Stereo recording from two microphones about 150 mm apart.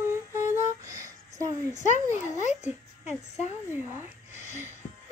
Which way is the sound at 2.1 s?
50° left (ahead or behind).